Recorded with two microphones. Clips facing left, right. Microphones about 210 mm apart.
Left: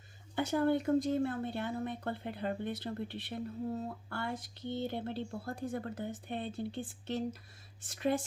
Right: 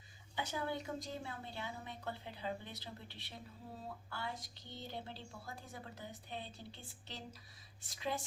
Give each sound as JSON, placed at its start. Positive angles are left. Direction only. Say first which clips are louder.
{"t": 0.3, "sound": "speech", "louder": "left 11 dB", "side_deg": 55}